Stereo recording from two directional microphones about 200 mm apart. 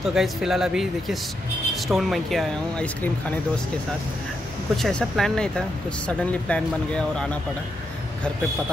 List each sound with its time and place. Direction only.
0.0 s speech: centre (ahead or behind)
4.7 s speech: centre (ahead or behind)